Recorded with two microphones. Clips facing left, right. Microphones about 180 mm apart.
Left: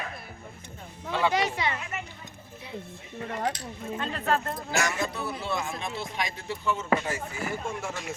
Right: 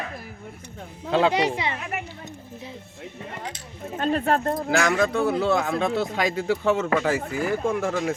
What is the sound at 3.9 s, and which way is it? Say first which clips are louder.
Speech: right 6 dB; 50° right (ahead or behind).